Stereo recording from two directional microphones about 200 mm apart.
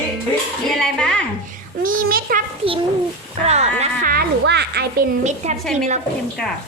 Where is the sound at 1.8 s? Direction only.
45° right (ahead or behind).